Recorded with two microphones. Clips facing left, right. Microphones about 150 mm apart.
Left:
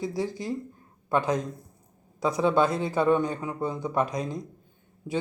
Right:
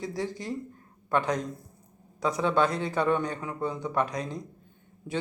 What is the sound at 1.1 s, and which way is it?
A man's voice, 5° left (ahead or behind).